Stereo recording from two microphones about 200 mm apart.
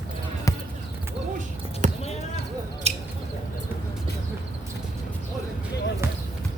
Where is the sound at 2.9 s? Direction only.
30° right (ahead or behind).